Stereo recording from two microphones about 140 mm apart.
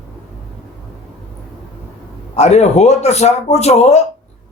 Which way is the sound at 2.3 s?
55° left (ahead or behind).